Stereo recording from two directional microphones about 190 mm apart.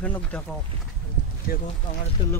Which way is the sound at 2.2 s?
20° left (ahead or behind).